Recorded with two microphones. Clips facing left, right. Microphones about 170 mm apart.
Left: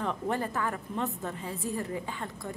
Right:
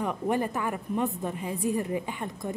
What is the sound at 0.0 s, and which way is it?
A woman's voice, 15° right (ahead or behind).